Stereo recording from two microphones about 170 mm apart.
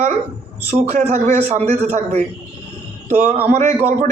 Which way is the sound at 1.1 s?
40° right (ahead or behind).